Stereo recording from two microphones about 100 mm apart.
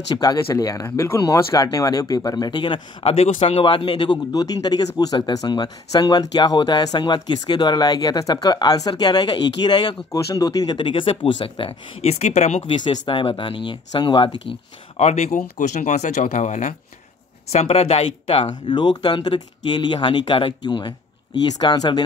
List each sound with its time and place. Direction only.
0.1 s speech: 40° left (ahead or behind)
3.0 s speech: 75° left (ahead or behind); by 4.2 s 55° left (ahead or behind)
4.3 s speech: 40° left (ahead or behind)
10.8 s speech: 60° left (ahead or behind); by 12.6 s 90° left
12.8 s speech: 50° left (ahead or behind)
13.2 s speech: 65° left (ahead or behind)
15.0 s speech: 90° left
17.5 s speech: 90° left; by 22.0 s 45° left (ahead or behind)